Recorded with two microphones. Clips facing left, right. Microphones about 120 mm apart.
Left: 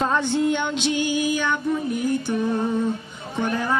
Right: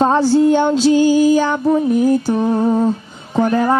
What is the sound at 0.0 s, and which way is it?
Speech, 35° right (ahead or behind).